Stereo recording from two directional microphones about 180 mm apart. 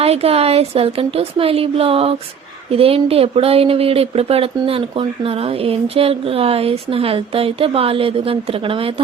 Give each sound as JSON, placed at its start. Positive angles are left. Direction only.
{"t": 0.0, "sound": "speech", "side_deg": -35}